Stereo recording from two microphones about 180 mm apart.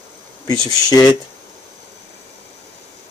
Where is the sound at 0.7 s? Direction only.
20° left (ahead or behind).